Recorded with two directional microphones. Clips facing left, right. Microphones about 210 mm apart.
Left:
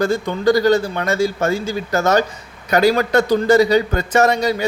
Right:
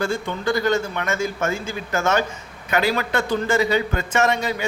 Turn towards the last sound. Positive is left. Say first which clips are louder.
# left 5 dB
turn(degrees=35)  # may be behind; listen again after turning